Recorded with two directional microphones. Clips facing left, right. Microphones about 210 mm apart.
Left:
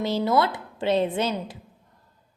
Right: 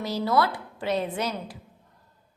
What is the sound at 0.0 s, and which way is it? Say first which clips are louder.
A woman's voice: left 2 dB; 25° left (ahead or behind).